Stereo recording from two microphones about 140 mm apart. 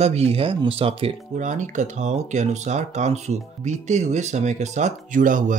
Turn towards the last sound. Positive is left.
turn(degrees=-70)  # may be behind; listen again after turning